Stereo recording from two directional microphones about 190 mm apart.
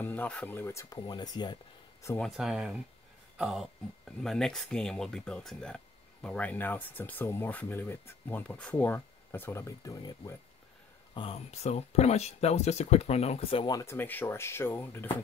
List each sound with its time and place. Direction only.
0.0 s speech: 10° left (ahead or behind)
2.0 s speech: 5° left (ahead or behind)
11.1 s speech: 30° left (ahead or behind)
13.7 s speech: 10° left (ahead or behind)